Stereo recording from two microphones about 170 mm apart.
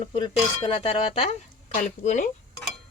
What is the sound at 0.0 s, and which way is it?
Speech, 30° left (ahead or behind).